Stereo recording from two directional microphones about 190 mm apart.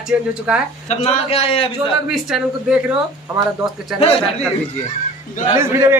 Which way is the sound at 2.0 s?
Centre (ahead or behind).